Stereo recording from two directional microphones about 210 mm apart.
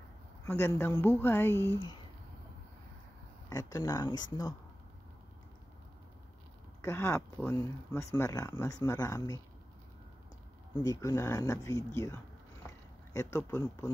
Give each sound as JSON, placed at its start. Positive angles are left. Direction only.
{"t": 0.5, "sound": "speech", "side_deg": 15}
{"t": 3.4, "sound": "speech", "side_deg": 15}
{"t": 6.8, "sound": "speech", "side_deg": 10}
{"t": 10.8, "sound": "speech", "side_deg": 15}